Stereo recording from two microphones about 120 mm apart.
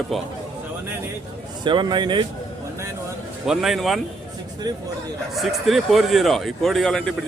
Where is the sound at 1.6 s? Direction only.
40° right (ahead or behind).